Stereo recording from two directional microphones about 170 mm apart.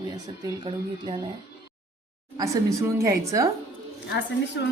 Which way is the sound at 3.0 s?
15° right (ahead or behind).